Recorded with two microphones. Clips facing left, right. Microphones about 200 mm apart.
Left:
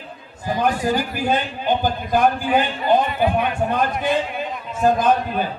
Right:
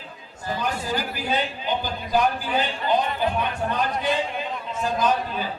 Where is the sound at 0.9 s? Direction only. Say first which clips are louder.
Left 6 dB; 50° left (ahead or behind).